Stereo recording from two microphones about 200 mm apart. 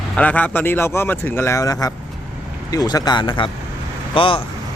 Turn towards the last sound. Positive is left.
turn(degrees=25)  # may be behind; listen again after turning